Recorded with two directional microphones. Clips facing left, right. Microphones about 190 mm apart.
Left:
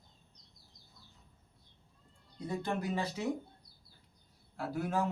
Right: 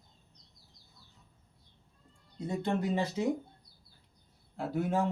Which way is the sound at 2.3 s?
25° right (ahead or behind).